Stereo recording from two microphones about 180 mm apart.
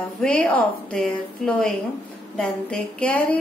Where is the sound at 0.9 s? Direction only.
5° left (ahead or behind).